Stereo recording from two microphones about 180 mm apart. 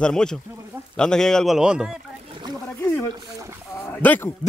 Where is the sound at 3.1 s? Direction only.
15° right (ahead or behind).